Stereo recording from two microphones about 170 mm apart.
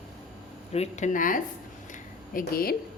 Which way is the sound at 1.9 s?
55° left (ahead or behind).